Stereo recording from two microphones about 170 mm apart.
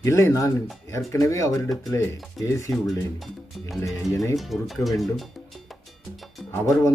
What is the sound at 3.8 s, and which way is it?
Speech, 15° left (ahead or behind).